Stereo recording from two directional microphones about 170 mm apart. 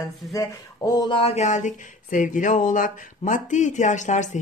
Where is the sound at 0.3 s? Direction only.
20° left (ahead or behind).